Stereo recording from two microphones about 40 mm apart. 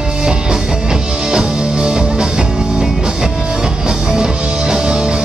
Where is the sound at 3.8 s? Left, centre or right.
Centre.